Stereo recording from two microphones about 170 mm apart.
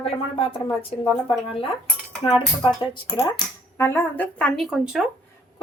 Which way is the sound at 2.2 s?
25° left (ahead or behind).